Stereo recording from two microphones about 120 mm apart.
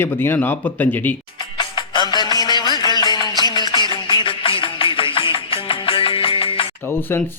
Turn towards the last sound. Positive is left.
turn(degrees=20)  # may be behind; listen again after turning